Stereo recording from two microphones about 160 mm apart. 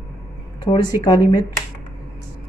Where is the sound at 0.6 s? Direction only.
30° left (ahead or behind).